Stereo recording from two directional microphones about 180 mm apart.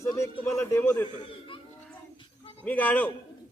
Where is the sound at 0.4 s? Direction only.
15° left (ahead or behind).